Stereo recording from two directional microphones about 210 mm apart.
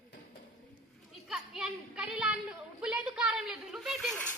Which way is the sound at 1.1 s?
5° right (ahead or behind).